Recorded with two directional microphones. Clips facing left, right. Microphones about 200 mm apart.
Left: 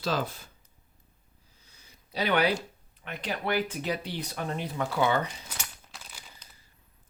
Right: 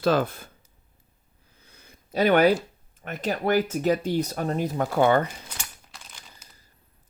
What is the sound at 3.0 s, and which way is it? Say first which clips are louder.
Speech: right 6 dB; 45° right (ahead or behind).